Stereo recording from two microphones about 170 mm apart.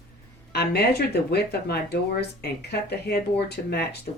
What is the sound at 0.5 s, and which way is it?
Speech, 70° left (ahead or behind).